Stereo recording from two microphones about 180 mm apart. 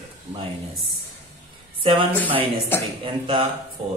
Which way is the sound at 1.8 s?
30° right (ahead or behind).